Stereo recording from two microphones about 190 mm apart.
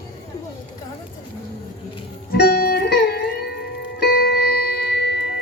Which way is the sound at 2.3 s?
55° left (ahead or behind).